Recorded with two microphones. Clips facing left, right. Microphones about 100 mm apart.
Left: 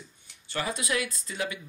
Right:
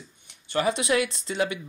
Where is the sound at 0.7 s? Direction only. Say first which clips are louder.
Right 5 dB; 25° right (ahead or behind).